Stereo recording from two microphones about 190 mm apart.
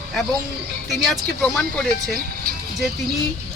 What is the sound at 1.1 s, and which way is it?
Speech, 5° left (ahead or behind).